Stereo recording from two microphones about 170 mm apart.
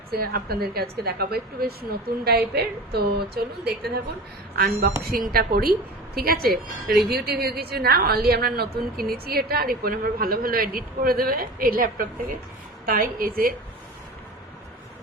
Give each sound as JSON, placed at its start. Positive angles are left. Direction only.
{"t": 0.1, "sound": "a woman's voice", "side_deg": -60}